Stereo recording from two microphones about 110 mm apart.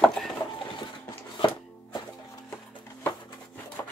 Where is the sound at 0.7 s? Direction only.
45° left (ahead or behind).